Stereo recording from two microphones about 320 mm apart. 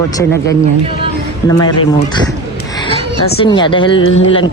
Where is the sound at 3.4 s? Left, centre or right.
Centre.